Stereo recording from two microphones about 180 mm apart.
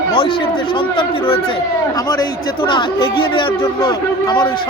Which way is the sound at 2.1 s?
25° left (ahead or behind).